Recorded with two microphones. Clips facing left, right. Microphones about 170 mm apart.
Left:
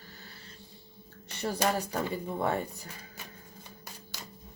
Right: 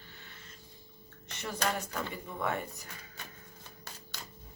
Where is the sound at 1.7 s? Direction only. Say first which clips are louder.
Left 5 dB; 35° left (ahead or behind).